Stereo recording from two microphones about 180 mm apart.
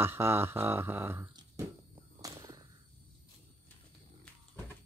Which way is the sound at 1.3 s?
20° right (ahead or behind).